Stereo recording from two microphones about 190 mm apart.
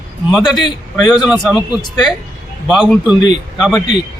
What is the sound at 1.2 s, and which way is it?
Speech, 5° right (ahead or behind).